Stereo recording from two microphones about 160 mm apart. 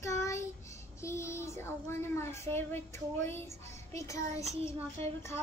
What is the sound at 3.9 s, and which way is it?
Child singing, 20° left (ahead or behind).